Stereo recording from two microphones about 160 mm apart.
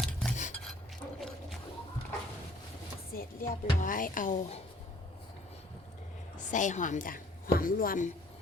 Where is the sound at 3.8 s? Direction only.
60° left (ahead or behind).